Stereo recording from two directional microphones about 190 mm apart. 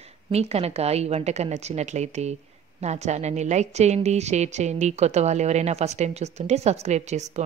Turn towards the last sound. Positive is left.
turn(degrees=-35)  # may be behind; listen again after turning